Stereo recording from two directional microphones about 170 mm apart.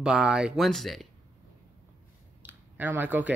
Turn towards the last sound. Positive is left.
turn(degrees=-10)  # may be behind; listen again after turning